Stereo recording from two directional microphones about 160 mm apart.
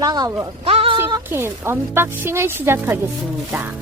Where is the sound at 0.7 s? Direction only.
35° right (ahead or behind).